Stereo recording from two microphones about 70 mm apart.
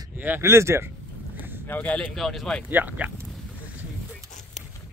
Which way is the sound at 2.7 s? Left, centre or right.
Right.